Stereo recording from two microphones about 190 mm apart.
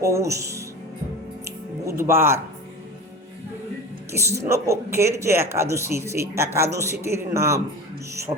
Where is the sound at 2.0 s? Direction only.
15° right (ahead or behind).